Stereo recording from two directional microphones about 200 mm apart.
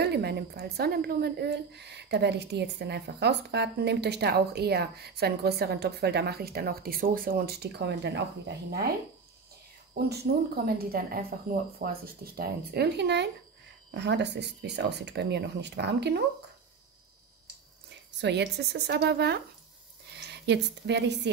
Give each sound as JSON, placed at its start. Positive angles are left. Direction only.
{"t": 0.0, "sound": "a woman's voice", "side_deg": -55}
{"t": 9.9, "sound": "a woman's voice", "side_deg": -55}
{"t": 18.2, "sound": "a woman's voice", "side_deg": -60}